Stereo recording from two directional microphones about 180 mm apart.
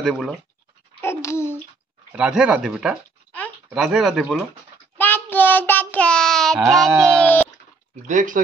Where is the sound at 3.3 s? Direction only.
10° left (ahead or behind).